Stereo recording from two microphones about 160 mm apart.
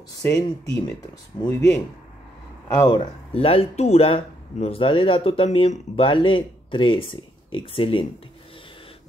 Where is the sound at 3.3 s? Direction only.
35° left (ahead or behind).